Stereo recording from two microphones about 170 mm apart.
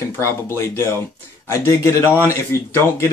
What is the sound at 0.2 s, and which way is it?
A man's voice, 15° left (ahead or behind).